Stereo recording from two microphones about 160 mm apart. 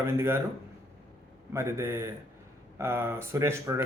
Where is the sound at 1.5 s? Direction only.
15° right (ahead or behind).